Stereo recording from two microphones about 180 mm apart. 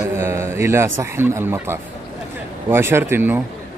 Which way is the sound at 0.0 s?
15° right (ahead or behind).